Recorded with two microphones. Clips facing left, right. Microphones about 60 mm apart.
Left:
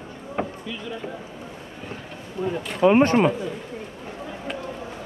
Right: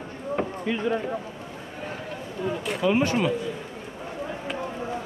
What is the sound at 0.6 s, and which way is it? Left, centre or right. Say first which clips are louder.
Speech: right 8 dB; right.